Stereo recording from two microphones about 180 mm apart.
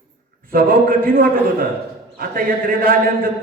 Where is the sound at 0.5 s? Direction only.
50° right (ahead or behind).